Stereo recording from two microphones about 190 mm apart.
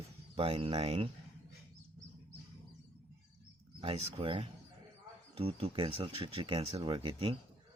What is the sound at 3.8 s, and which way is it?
Speech, 30° right (ahead or behind).